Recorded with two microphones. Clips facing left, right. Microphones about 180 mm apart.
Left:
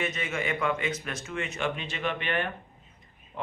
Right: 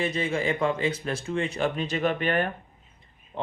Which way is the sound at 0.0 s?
30° right (ahead or behind).